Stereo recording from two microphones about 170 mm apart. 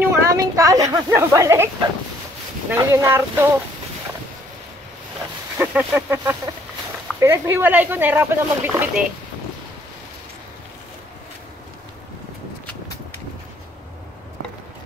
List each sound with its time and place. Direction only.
0.0 s a sound: 15° right (ahead or behind)
2.7 s speech: 15° right (ahead or behind)
5.6 s speech: 10° right (ahead or behind)